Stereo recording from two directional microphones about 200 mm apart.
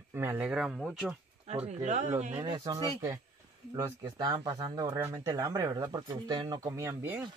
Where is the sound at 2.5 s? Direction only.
20° right (ahead or behind).